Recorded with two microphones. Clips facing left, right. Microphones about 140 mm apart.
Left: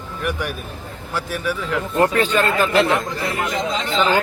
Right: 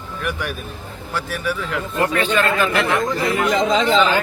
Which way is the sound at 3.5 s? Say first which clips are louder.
Right 6 dB; 90° right.